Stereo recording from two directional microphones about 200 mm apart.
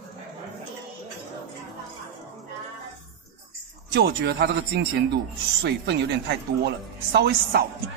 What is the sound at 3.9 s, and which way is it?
Speech, 55° right (ahead or behind).